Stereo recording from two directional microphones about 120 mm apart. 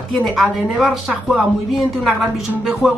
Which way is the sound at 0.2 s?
Centre (ahead or behind).